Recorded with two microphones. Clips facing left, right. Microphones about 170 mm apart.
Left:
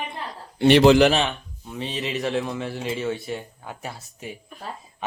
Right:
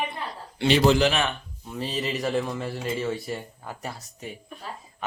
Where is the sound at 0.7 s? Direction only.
80° left.